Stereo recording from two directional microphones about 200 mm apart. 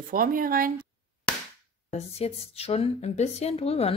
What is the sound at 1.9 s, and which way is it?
A woman's voice, 30° left (ahead or behind).